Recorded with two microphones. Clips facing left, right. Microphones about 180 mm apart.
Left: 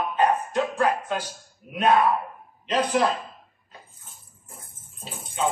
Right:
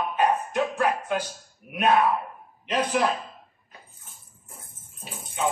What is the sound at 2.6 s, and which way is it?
Speech, 15° right (ahead or behind).